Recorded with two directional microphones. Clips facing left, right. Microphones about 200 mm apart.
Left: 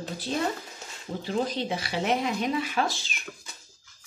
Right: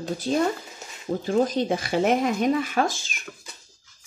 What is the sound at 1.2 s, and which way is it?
A woman's voice, 45° right (ahead or behind).